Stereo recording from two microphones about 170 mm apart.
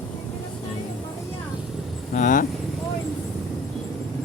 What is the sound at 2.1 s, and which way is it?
Speech, 50° left (ahead or behind).